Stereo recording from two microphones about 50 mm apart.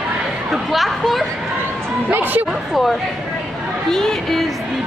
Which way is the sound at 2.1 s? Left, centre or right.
Right.